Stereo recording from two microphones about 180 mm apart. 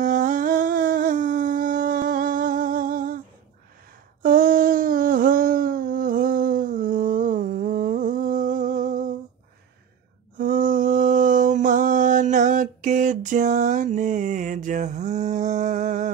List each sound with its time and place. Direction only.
0.0 s humming: 45° right (ahead or behind)
4.2 s humming: 50° right (ahead or behind)
10.3 s a sound: 50° right (ahead or behind)